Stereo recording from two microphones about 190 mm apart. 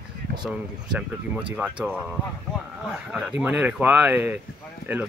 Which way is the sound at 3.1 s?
5° right (ahead or behind).